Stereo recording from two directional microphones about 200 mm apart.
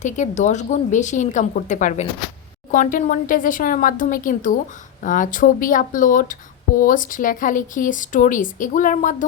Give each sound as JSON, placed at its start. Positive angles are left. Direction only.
{"t": 0.0, "sound": "speech", "side_deg": 35}